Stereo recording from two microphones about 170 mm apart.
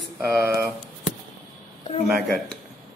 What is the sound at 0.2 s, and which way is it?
Speech, 15° right (ahead or behind).